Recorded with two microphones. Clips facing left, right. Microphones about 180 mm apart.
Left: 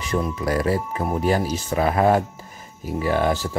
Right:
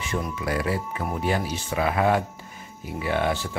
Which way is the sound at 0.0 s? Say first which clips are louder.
Left 5 dB; 40° left (ahead or behind).